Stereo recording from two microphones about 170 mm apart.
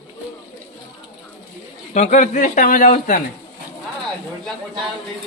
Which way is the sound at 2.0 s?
45° left (ahead or behind).